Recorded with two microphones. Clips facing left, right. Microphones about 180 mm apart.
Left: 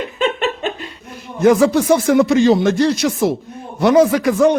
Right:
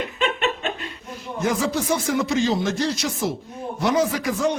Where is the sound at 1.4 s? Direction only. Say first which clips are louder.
Left 11 dB; 65° left (ahead or behind).